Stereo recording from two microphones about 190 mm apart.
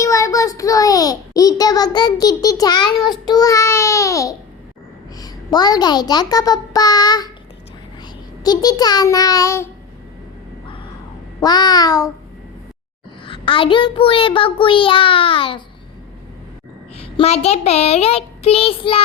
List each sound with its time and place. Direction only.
0.0 s a child's voice: 15° left (ahead or behind)
8.4 s a child's voice: 20° left (ahead or behind)
11.3 s a child's voice: 20° left (ahead or behind)
13.2 s a child's voice: 25° left (ahead or behind)
17.0 s a child's voice: 30° left (ahead or behind)